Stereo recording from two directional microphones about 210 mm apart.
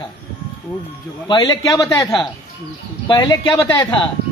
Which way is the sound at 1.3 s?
20° left (ahead or behind).